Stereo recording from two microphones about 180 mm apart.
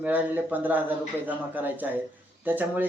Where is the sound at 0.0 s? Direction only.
10° right (ahead or behind).